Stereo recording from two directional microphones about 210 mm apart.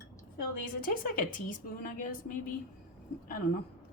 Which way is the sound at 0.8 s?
40° left (ahead or behind).